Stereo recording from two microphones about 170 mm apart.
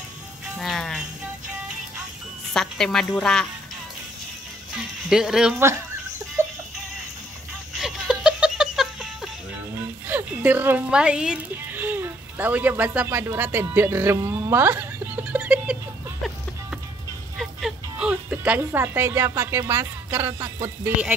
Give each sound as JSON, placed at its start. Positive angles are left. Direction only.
{"t": 0.6, "sound": "a woman's voice", "side_deg": 0}
{"t": 2.5, "sound": "a woman's voice", "side_deg": 5}
{"t": 5.1, "sound": "a woman's voice", "side_deg": -5}
{"t": 6.4, "sound": "music", "side_deg": -15}
{"t": 7.8, "sound": "laughter", "side_deg": -5}
{"t": 10.0, "sound": "music", "side_deg": -10}
{"t": 17.4, "sound": "a woman's voice", "side_deg": 0}